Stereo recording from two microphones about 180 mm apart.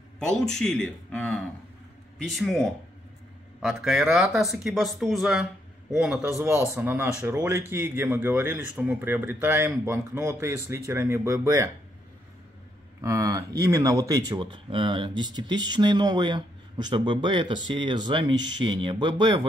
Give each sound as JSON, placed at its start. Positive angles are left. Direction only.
{"t": 0.3, "sound": "speech", "side_deg": 5}
{"t": 13.0, "sound": "speech", "side_deg": -15}